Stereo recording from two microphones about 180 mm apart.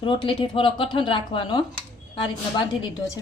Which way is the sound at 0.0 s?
30° left (ahead or behind).